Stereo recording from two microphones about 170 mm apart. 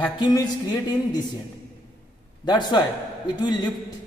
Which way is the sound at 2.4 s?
25° left (ahead or behind).